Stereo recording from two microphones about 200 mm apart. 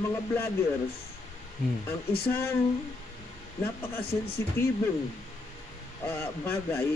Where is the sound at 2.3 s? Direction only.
10° left (ahead or behind).